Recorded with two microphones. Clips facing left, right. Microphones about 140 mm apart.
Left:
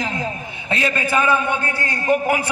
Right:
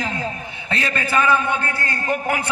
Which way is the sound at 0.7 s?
15° left (ahead or behind).